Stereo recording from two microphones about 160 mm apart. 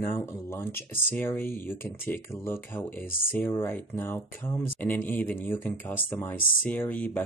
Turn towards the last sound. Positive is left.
turn(degrees=10)  # may be behind; listen again after turning